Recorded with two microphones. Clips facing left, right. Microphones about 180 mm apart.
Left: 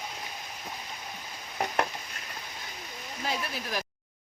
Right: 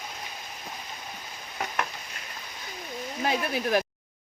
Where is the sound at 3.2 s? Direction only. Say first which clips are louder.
Right 6 dB; 60° right (ahead or behind).